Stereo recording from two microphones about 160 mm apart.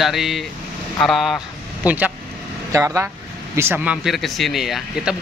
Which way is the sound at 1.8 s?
10° right (ahead or behind).